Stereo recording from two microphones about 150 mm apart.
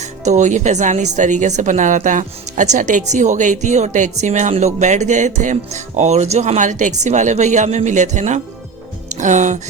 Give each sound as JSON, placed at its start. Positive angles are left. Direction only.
{"t": 0.3, "sound": "a woman's voice", "side_deg": -55}